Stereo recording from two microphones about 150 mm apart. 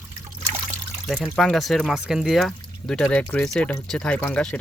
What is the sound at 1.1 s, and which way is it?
Speech, 5° left (ahead or behind).